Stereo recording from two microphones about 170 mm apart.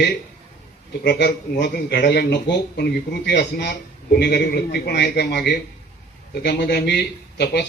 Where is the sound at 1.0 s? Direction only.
85° left.